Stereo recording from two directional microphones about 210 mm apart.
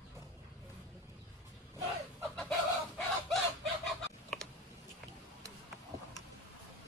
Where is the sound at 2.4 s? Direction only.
5° left (ahead or behind).